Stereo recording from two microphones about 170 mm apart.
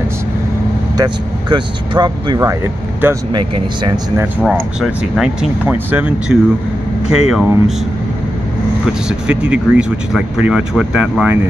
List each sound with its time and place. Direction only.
0.9 s speech: 25° right (ahead or behind)
4.4 s speech: 5° right (ahead or behind)
9.3 s speech: 5° right (ahead or behind)